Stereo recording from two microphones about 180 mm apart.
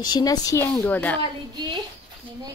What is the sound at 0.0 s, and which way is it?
Speech, 20° left (ahead or behind).